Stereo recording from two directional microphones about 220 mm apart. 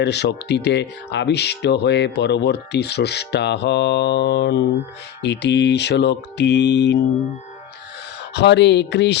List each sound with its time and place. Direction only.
0.0 s speech: 50° left (ahead or behind)
8.3 s speech: 50° left (ahead or behind)